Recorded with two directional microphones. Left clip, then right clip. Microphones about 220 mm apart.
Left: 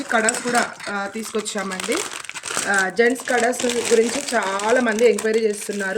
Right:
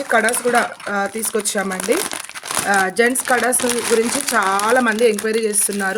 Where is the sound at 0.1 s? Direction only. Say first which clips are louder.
Right 4 dB; 55° right (ahead or behind).